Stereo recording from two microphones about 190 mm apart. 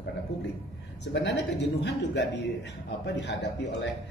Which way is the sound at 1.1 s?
65° left (ahead or behind).